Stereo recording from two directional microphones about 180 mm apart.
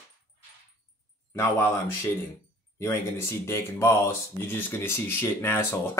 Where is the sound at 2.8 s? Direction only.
15° left (ahead or behind).